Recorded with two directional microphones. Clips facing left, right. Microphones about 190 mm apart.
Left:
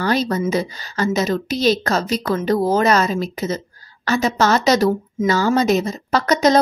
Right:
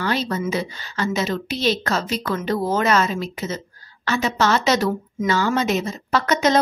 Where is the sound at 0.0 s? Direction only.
40° left (ahead or behind).